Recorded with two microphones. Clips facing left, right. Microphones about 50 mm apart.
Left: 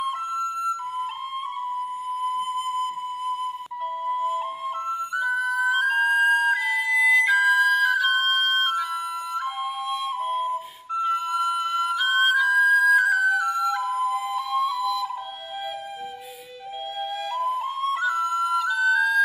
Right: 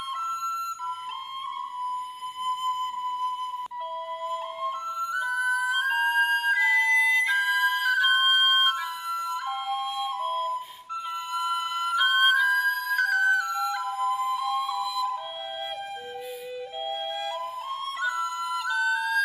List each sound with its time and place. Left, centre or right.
0.0 s flute: centre
2.4 s flute: centre
10.0 s flute: centre
18.0 s flute: centre